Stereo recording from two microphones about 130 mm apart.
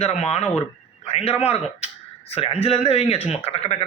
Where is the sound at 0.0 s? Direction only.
60° left (ahead or behind).